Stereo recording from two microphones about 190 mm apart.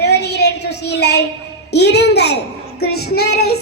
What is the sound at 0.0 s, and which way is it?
Child singing, 60° left (ahead or behind).